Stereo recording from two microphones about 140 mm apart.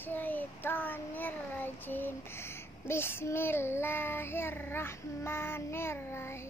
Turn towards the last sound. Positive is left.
turn(degrees=15)  # may be behind; listen again after turning